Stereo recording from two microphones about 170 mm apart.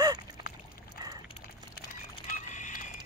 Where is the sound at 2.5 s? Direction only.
50° left (ahead or behind).